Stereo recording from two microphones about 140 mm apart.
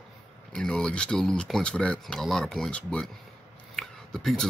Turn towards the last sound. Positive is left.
turn(degrees=5)  # may be behind; listen again after turning